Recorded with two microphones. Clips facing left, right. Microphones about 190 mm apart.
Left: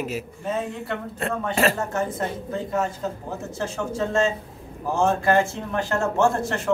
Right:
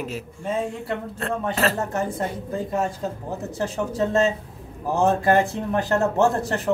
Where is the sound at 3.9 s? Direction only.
40° right (ahead or behind).